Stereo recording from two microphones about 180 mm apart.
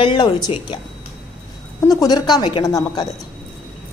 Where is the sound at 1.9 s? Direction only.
20° left (ahead or behind).